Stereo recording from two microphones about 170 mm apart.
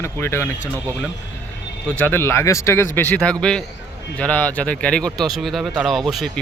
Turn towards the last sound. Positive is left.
turn(degrees=0)  # may be behind; listen again after turning